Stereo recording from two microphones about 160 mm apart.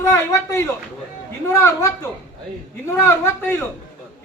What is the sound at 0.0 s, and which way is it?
A man's voice, 20° left (ahead or behind).